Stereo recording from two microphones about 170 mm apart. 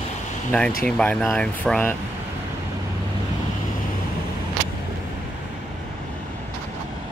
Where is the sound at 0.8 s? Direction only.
5° left (ahead or behind).